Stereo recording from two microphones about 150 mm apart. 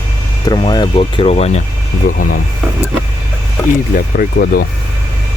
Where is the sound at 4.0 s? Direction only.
80° left.